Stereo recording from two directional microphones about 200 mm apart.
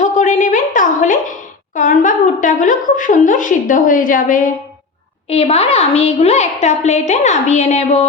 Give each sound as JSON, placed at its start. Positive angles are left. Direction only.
{"t": 0.0, "sound": "a sound", "side_deg": 35}
{"t": 1.7, "sound": "a woman's voice", "side_deg": 40}
{"t": 5.3, "sound": "a woman's voice", "side_deg": 30}